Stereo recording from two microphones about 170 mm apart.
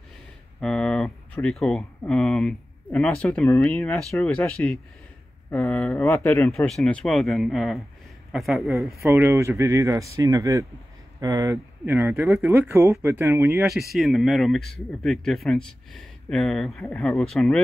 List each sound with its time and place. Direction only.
0.6 s speech: 5° left (ahead or behind)
9.0 s speech: 15° right (ahead or behind)
13.9 s speech: centre (ahead or behind)